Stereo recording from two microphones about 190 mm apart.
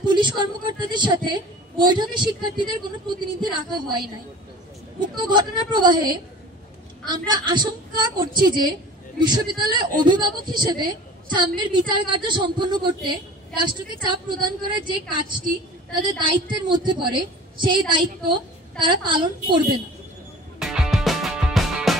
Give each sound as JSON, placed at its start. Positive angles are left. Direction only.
{"t": 0.0, "sound": "a woman's voice", "side_deg": -25}
{"t": 5.1, "sound": "a woman's voice", "side_deg": -25}
{"t": 20.6, "sound": "music", "side_deg": 0}